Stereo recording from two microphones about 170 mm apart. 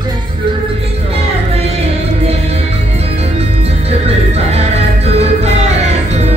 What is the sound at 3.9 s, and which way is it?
Music, 40° right (ahead or behind).